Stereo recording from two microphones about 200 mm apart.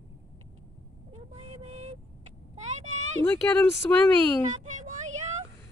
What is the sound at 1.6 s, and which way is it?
Vehicle, 35° right (ahead or behind).